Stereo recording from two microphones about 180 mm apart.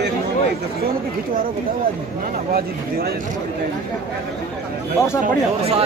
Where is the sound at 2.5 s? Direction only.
55° right (ahead or behind).